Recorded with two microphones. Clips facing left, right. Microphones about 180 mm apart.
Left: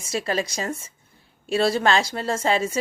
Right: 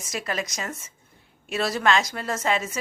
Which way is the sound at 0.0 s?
30° left (ahead or behind).